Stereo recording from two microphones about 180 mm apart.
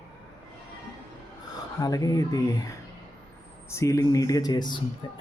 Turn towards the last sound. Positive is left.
turn(degrees=25)  # may be behind; listen again after turning